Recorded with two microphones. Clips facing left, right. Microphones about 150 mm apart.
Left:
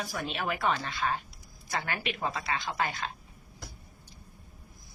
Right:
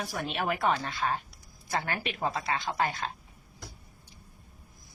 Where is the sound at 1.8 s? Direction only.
40° right (ahead or behind).